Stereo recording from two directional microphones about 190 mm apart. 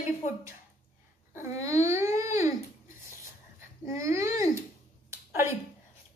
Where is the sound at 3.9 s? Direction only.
15° right (ahead or behind).